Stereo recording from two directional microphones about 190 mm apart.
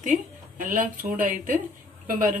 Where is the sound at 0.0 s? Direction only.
45° right (ahead or behind).